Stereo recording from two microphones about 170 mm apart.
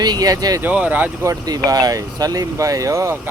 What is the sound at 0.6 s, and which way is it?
Speech, 10° right (ahead or behind).